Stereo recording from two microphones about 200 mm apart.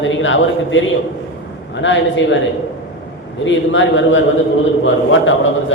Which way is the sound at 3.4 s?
70° left (ahead or behind).